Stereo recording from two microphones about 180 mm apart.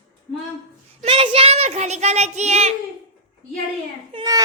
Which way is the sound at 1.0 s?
30° right (ahead or behind).